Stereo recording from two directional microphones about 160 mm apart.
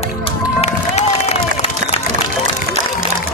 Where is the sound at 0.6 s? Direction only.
45° left (ahead or behind).